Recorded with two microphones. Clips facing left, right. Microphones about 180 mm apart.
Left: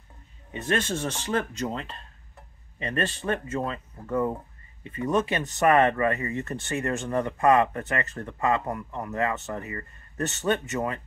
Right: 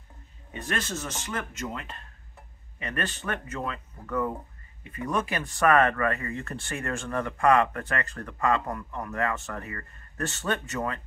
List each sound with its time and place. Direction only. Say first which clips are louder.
0.5 s speech: left 5 dB; 25° left (ahead or behind)